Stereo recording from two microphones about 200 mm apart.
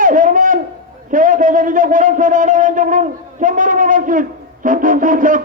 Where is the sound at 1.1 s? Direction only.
40° right (ahead or behind).